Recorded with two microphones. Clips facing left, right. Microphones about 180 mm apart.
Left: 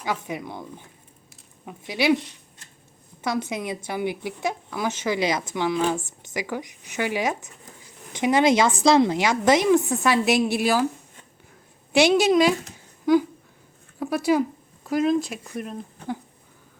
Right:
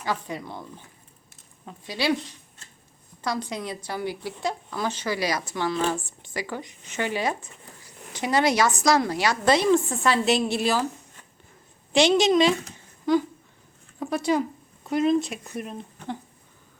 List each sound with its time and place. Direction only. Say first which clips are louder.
0.0 s speech: left 1 dB; 15° left (ahead or behind)
3.2 s speech: left 3 dB; 20° left (ahead or behind)
11.9 s speech: left 1 dB; 10° left (ahead or behind)
14.0 s speech: left 3 dB; 5° left (ahead or behind)